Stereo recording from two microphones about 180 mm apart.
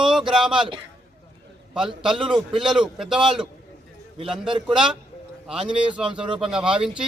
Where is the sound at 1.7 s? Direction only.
5° right (ahead or behind).